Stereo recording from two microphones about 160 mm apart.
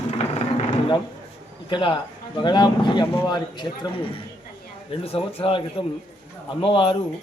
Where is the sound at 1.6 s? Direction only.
30° left (ahead or behind).